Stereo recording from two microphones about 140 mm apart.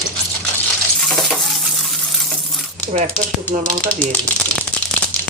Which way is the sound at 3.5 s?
60° right (ahead or behind).